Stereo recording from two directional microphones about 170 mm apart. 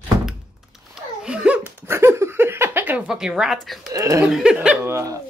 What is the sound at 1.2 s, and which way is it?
Laughter, 5° right (ahead or behind).